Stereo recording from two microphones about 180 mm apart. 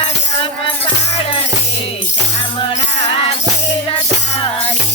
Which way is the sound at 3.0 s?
35° left (ahead or behind).